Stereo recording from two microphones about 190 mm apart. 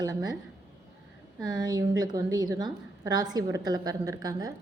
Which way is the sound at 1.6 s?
20° right (ahead or behind).